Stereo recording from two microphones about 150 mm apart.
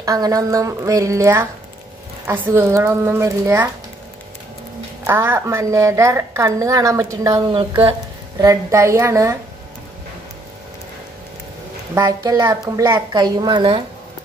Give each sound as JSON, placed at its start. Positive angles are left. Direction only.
{"t": 0.0, "sound": "a woman's voice", "side_deg": -25}
{"t": 5.0, "sound": "a woman's voice", "side_deg": -15}
{"t": 8.4, "sound": "a woman's voice", "side_deg": -20}
{"t": 11.9, "sound": "a woman's voice", "side_deg": -25}